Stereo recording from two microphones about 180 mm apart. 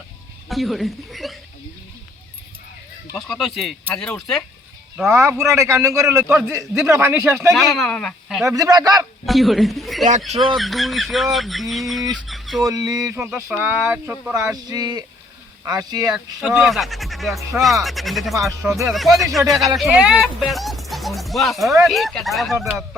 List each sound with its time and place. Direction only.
0.4 s speech: centre (ahead or behind)
3.2 s speech: centre (ahead or behind)
5.0 s a man's voice: 15° right (ahead or behind)
7.5 s speech: centre (ahead or behind)
8.4 s speech: 20° right (ahead or behind)
9.2 s a man's voice: centre (ahead or behind)
12.1 s a sound: centre (ahead or behind)
12.6 s a man's voice: 20° right (ahead or behind)
14.5 s speech: 20° right (ahead or behind)
16.1 s speech: 5° right (ahead or behind)
22.5 s a man's voice: 10° right (ahead or behind)